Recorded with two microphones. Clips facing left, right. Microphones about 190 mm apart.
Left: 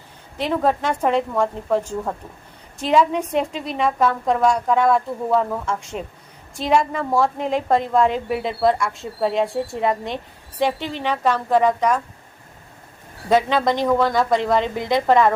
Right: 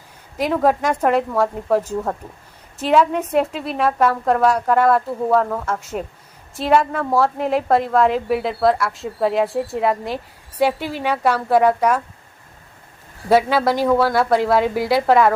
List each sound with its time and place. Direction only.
0.3 s a woman's voice: 10° right (ahead or behind)
13.3 s a woman's voice: 5° right (ahead or behind)